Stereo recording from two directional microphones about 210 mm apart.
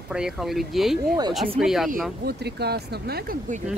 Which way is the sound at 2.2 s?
50° right (ahead or behind).